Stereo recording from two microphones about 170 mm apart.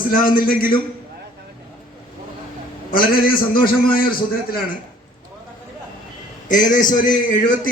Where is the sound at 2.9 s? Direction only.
60° left (ahead or behind).